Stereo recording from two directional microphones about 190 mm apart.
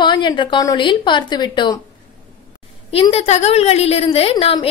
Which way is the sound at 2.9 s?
30° left (ahead or behind).